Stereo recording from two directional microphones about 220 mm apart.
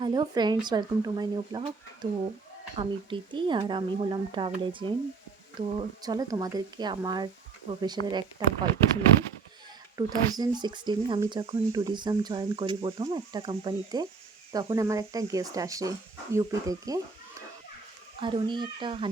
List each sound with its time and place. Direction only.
0.0 s speech: 20° right (ahead or behind)
10.0 s speech: 20° right (ahead or behind)
18.2 s speech: 20° right (ahead or behind)